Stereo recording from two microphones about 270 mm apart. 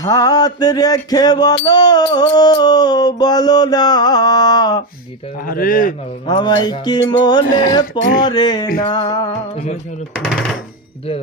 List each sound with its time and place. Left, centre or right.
0.0 s music: centre
5.5 s speech: left
6.2 s music: centre
10.2 s speech: centre